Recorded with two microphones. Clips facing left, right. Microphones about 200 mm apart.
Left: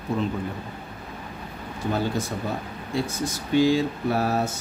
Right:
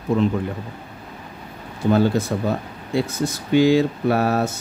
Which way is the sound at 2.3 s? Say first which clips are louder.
Right 7 dB; 75° right (ahead or behind).